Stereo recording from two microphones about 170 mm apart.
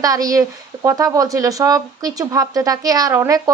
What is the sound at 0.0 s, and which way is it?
Speech, 20° right (ahead or behind).